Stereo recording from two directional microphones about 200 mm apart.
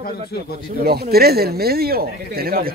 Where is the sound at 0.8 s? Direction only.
50° right (ahead or behind).